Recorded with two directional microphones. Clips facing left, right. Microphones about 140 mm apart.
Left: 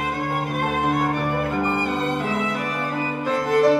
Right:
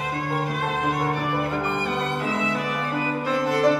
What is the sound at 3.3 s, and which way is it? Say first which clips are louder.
Music: left 5 dB; 45° left (ahead or behind).